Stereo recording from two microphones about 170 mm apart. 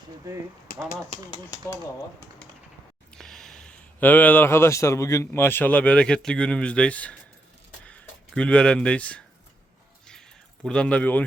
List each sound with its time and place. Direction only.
1.1 s speech: 25° left (ahead or behind)
3.1 s speech: centre (ahead or behind)
10.1 s a sound: 5° left (ahead or behind)